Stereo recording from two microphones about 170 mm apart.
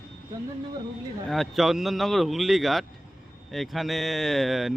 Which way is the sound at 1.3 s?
Centre (ahead or behind).